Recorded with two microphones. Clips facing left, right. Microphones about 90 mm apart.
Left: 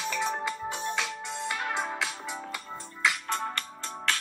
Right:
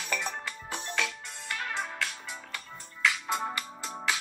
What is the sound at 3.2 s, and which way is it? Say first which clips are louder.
Music: even; 5° right (ahead or behind).